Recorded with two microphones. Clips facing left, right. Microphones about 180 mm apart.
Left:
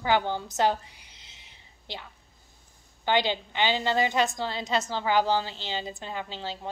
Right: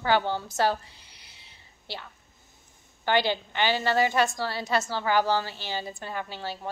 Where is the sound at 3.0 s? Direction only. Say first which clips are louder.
Right 1 dB; 15° left (ahead or behind).